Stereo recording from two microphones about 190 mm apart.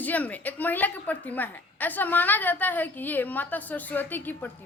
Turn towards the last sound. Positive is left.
turn(degrees=10)  # may be behind; listen again after turning